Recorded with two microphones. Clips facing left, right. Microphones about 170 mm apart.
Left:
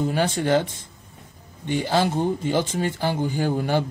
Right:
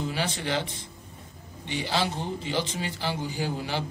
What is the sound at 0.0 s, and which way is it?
Speech, 50° left (ahead or behind).